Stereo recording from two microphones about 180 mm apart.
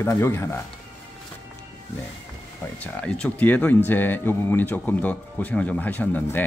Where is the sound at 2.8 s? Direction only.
5° left (ahead or behind).